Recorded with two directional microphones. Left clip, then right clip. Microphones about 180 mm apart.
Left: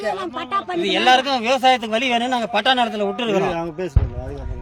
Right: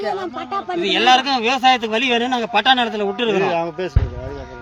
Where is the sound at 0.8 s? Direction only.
60° left (ahead or behind).